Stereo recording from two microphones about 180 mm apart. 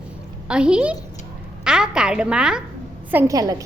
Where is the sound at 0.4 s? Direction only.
5° right (ahead or behind).